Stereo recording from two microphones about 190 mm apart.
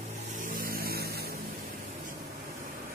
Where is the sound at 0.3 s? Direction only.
45° right (ahead or behind).